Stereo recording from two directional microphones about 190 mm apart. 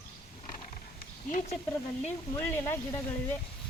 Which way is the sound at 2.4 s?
10° left (ahead or behind).